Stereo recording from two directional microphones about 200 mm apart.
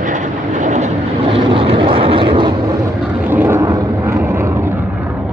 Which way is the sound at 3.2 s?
10° right (ahead or behind).